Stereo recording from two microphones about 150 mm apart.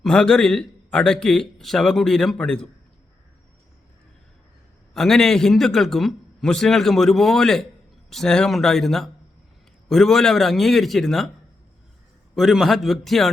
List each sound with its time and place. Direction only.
0.0 s a man's voice: 5° left (ahead or behind)
4.9 s a man's voice: 5° left (ahead or behind)
12.3 s a man's voice: centre (ahead or behind)